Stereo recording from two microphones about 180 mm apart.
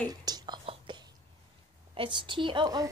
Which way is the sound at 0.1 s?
20° right (ahead or behind).